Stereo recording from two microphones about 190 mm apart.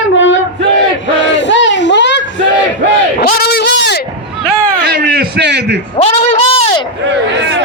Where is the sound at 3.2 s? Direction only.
55° left (ahead or behind).